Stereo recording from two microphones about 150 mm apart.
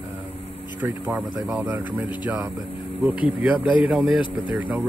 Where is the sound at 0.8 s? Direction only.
10° right (ahead or behind).